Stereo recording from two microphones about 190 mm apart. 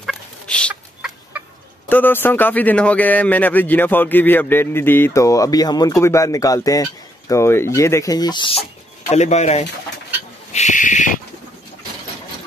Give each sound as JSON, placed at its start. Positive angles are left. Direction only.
{"t": 0.0, "sound": "fowl", "side_deg": 0}
{"t": 1.9, "sound": "a man's voice", "side_deg": 10}
{"t": 10.5, "sound": "bird", "side_deg": 40}